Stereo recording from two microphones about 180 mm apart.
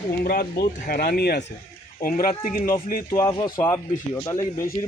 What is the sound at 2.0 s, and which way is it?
Speech, 50° left (ahead or behind).